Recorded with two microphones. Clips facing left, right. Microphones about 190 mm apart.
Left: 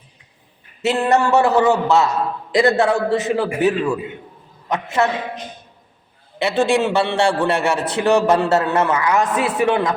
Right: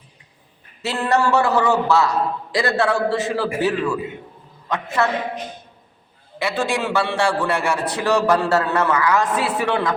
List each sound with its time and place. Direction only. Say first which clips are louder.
0.8 s a man's voice: left 3 dB; 20° left (ahead or behind)
6.4 s a man's voice: left 5 dB; 25° left (ahead or behind)